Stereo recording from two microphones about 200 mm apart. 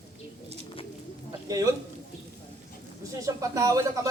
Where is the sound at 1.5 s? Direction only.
15° right (ahead or behind).